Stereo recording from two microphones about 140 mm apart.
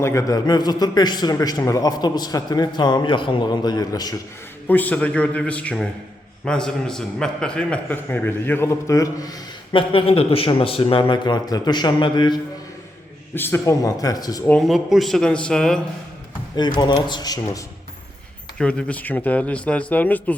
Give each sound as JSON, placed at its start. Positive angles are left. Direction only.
{"t": 0.0, "sound": "a man's voice", "side_deg": 20}
{"t": 4.7, "sound": "a man's voice", "side_deg": 10}
{"t": 9.7, "sound": "speech", "side_deg": 40}
{"t": 13.3, "sound": "a man's voice", "side_deg": 15}
{"t": 14.7, "sound": "a man's voice", "side_deg": 0}
{"t": 16.6, "sound": "speech", "side_deg": 30}
{"t": 18.5, "sound": "a man's voice", "side_deg": 5}